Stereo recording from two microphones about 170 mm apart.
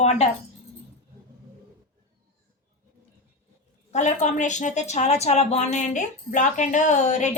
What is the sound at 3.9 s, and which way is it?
A woman's voice, 45° left (ahead or behind).